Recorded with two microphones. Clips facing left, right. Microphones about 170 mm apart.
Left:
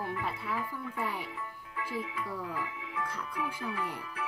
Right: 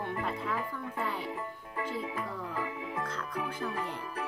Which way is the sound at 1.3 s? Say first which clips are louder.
Right 4 dB; 45° right (ahead or behind).